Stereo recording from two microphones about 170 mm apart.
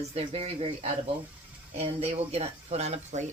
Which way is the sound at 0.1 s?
35° right (ahead or behind).